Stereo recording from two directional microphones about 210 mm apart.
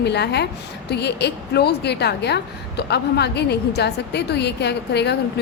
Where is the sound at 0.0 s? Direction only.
55° left (ahead or behind).